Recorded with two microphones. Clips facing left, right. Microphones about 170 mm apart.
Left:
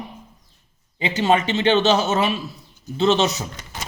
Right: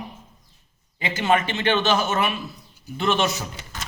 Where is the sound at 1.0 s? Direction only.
20° left (ahead or behind).